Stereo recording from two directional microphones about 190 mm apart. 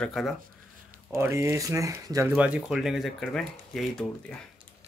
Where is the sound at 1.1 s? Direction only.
15° right (ahead or behind).